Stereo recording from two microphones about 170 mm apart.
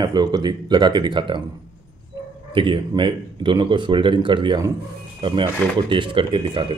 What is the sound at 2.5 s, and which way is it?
A man's voice, 30° right (ahead or behind).